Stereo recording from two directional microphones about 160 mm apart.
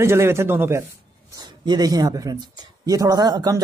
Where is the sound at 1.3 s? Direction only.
25° right (ahead or behind).